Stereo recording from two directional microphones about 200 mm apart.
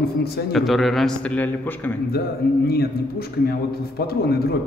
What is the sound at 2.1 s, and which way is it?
A man's voice, 50° left (ahead or behind).